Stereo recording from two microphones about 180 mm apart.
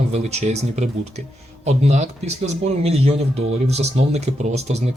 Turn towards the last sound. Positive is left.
turn(degrees=-35)  # may be behind; listen again after turning